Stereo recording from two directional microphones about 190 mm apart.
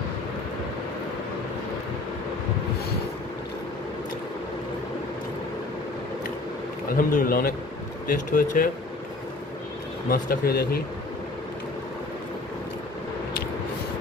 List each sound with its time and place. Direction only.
7.0 s speech: 45° left (ahead or behind)
10.0 s speech: 50° left (ahead or behind)